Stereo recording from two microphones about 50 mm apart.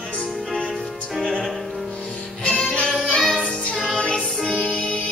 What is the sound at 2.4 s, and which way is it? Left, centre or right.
Music, centre.